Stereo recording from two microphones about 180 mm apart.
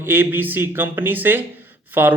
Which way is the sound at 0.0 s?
10° right (ahead or behind).